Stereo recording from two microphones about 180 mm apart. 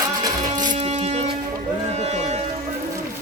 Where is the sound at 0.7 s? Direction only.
35° right (ahead or behind).